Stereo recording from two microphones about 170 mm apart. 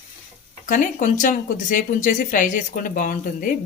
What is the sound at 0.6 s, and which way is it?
Speech, 50° left (ahead or behind).